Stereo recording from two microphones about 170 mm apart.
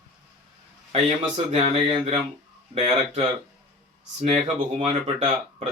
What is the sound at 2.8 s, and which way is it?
Speech, 35° right (ahead or behind).